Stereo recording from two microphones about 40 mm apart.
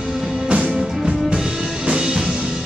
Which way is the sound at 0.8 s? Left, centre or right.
Centre.